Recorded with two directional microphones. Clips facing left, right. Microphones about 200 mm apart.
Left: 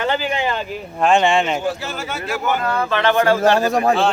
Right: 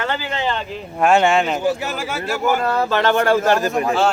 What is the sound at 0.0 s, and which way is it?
Speech, 15° left (ahead or behind).